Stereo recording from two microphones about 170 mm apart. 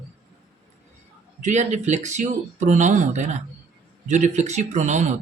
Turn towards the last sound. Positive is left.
turn(degrees=-45)  # may be behind; listen again after turning